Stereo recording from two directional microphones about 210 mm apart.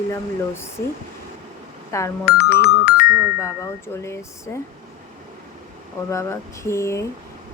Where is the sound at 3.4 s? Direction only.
10° left (ahead or behind).